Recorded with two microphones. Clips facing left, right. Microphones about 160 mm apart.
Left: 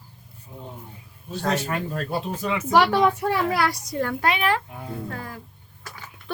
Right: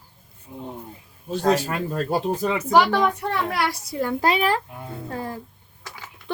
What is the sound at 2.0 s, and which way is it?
Speech, 35° right (ahead or behind).